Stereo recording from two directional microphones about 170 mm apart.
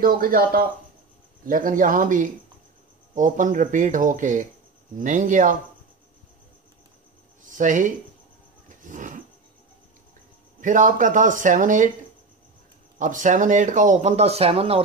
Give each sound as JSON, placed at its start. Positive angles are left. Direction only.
{"t": 0.0, "sound": "speech", "side_deg": -55}
{"t": 7.4, "sound": "speech", "side_deg": -50}
{"t": 8.6, "sound": "a sound", "side_deg": -50}
{"t": 10.6, "sound": "speech", "side_deg": -50}
{"t": 13.0, "sound": "speech", "side_deg": -50}